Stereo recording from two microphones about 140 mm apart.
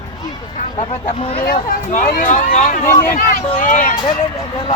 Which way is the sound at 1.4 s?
75° left (ahead or behind).